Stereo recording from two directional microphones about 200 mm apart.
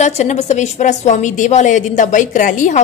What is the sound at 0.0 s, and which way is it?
A woman's voice, 35° left (ahead or behind).